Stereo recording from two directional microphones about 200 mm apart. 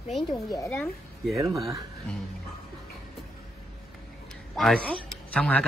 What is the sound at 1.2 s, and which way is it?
Speech, centre (ahead or behind).